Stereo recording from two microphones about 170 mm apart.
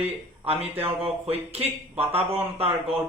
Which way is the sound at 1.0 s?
35° right (ahead or behind).